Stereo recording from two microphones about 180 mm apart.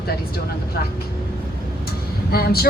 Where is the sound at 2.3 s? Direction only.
60° left (ahead or behind).